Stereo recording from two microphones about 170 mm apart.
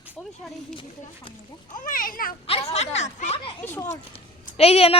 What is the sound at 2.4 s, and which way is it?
A woman's voice, 35° left (ahead or behind).